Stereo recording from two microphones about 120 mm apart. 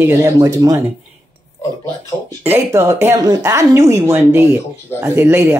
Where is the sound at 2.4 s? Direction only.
20° right (ahead or behind).